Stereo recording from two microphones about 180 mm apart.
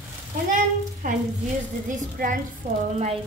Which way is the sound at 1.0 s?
45° right (ahead or behind).